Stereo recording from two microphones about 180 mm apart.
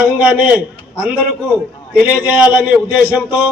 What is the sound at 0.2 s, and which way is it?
A man's voice, 5° right (ahead or behind).